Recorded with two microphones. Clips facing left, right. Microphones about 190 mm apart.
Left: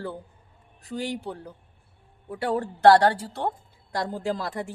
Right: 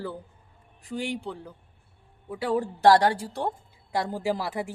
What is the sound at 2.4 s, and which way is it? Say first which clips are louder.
Speech: even; 5° right (ahead or behind).